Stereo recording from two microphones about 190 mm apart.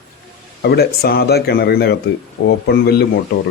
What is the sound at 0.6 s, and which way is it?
Speech, 55° left (ahead or behind).